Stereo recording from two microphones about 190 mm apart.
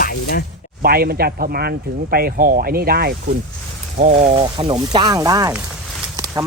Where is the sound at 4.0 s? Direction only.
40° right (ahead or behind).